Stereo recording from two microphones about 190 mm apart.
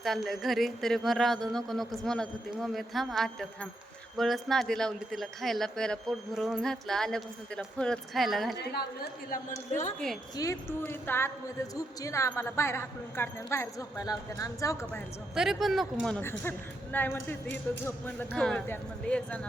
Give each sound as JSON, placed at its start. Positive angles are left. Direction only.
{"t": 0.0, "sound": "speech", "side_deg": 0}
{"t": 8.5, "sound": "a woman's voice", "side_deg": 60}
{"t": 10.3, "sound": "a woman's voice", "side_deg": 15}
{"t": 15.4, "sound": "a woman's voice", "side_deg": 0}